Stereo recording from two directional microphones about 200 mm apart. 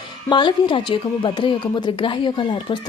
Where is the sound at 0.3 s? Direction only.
25° left (ahead or behind).